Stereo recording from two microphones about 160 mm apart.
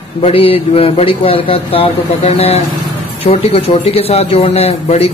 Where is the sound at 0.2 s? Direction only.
35° left (ahead or behind).